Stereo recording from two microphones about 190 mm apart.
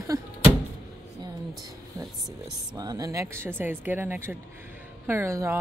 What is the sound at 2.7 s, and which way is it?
Speech, 20° right (ahead or behind).